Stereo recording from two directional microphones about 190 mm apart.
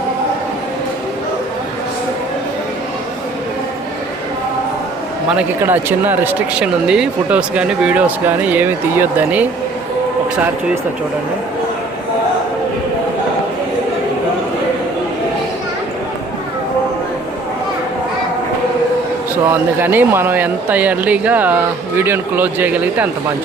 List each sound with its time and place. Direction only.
5.3 s speech: 10° right (ahead or behind)
19.5 s speech: 10° right (ahead or behind)